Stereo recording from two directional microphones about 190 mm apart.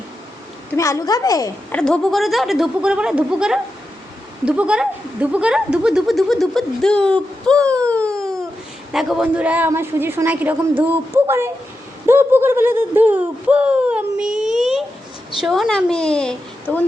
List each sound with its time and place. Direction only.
0.8 s a woman's voice: 15° left (ahead or behind)
1.7 s speech: 5° left (ahead or behind)
7.7 s wail: 5° left (ahead or behind)
8.9 s a woman's voice: centre (ahead or behind)